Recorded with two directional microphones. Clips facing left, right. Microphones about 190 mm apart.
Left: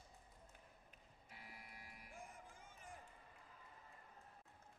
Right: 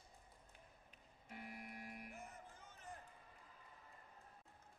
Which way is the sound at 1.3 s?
55° right (ahead or behind).